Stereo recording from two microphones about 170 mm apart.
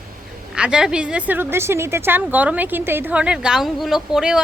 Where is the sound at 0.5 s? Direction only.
5° right (ahead or behind).